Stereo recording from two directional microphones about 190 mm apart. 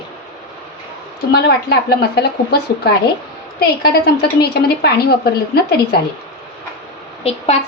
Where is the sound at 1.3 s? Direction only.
60° left (ahead or behind).